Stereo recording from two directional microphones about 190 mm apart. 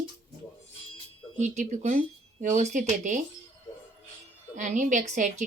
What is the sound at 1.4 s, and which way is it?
A woman's voice, 40° right (ahead or behind).